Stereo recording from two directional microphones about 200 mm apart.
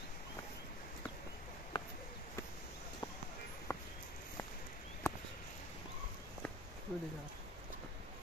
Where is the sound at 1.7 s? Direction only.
20° left (ahead or behind).